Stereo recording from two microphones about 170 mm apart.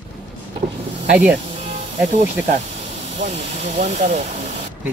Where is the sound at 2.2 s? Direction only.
45° right (ahead or behind).